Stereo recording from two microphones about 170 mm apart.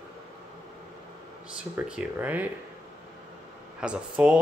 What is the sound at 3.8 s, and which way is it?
Speech, 5° right (ahead or behind).